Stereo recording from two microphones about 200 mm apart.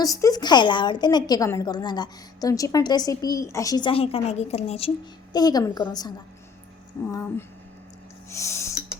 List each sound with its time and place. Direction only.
0.0 s a woman's voice: 15° left (ahead or behind)
5.3 s a woman's voice: 20° left (ahead or behind)
7.0 s a sound: 15° left (ahead or behind)
8.3 s snort: 15° left (ahead or behind)